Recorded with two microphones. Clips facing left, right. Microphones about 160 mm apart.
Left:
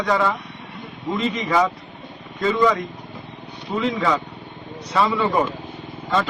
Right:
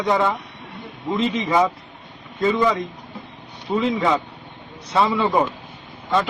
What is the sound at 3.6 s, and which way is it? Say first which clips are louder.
Speech: right 2 dB; 20° right (ahead or behind).